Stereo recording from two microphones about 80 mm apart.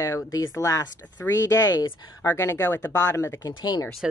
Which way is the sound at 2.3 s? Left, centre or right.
Left.